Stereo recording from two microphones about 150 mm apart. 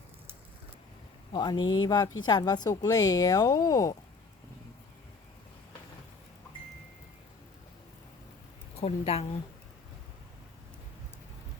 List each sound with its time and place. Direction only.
1.3 s a woman's voice: 30° left (ahead or behind)
8.8 s a woman's voice: 40° left (ahead or behind)